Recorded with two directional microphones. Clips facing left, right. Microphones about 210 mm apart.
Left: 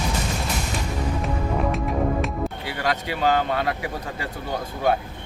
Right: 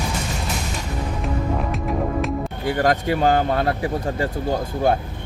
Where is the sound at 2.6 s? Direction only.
45° right (ahead or behind).